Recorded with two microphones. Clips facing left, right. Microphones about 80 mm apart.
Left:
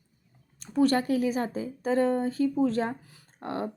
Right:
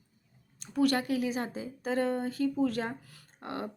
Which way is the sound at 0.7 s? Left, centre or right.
Left.